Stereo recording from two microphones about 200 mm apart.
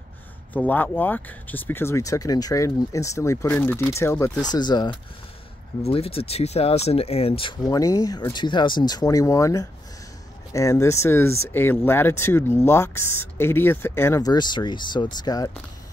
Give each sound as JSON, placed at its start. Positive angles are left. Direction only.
{"t": 0.5, "sound": "speech", "side_deg": 10}